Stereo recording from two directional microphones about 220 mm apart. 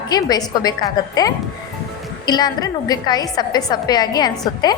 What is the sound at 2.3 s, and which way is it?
A woman's voice, 20° left (ahead or behind).